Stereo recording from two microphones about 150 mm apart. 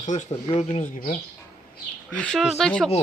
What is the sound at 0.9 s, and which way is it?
Speech, 70° left (ahead or behind).